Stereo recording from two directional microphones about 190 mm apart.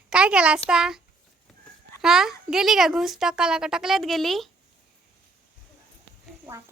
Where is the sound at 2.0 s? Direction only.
5° right (ahead or behind).